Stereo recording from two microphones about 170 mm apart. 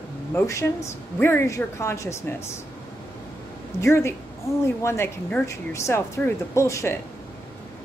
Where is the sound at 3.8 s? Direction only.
15° left (ahead or behind).